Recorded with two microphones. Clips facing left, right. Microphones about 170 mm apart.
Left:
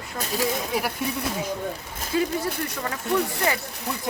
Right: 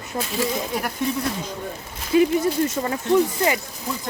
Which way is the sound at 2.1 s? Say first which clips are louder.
Right 7 dB; 20° right (ahead or behind).